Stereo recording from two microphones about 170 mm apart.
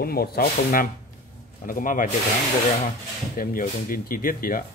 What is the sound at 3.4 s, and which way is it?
Speech, 55° left (ahead or behind).